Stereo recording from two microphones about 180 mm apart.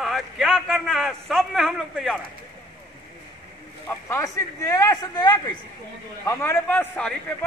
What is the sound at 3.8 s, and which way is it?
A man's voice, 15° left (ahead or behind).